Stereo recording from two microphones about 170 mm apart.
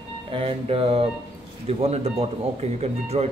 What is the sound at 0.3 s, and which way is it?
Speech, 35° right (ahead or behind).